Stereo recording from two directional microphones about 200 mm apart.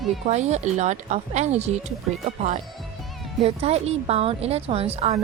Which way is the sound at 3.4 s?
30° right (ahead or behind).